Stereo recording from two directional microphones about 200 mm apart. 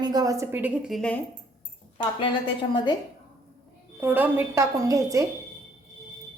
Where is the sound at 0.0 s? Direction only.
20° right (ahead or behind); by 1.2 s 5° left (ahead or behind).